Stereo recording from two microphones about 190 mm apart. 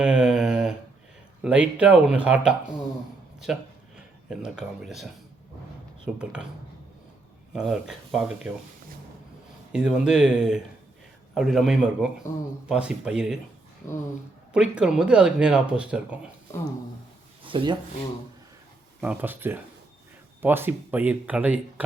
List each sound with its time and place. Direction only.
0.0 s a sound: 5° right (ahead or behind)
1.4 s speech: 5° right (ahead or behind)
6.1 s speech: 5° right (ahead or behind)
7.5 s speech: centre (ahead or behind)
9.7 s speech: 5° right (ahead or behind)
14.5 s speech: 5° right (ahead or behind)
17.4 s a sound: 25° right (ahead or behind)
19.0 s speech: 10° right (ahead or behind)